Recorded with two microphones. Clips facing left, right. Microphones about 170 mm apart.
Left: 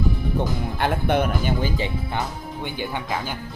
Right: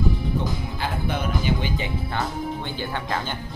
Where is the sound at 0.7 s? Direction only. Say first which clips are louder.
Left 9 dB; 60° left (ahead or behind).